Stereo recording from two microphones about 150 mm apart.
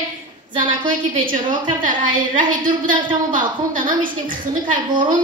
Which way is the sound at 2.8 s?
65° right (ahead or behind).